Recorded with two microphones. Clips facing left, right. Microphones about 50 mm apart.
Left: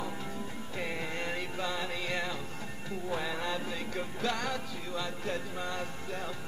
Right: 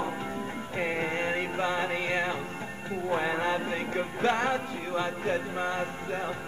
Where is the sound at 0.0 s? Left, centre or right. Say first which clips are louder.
Right 6 dB; right.